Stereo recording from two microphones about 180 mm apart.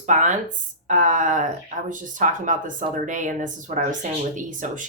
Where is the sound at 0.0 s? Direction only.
45° right (ahead or behind).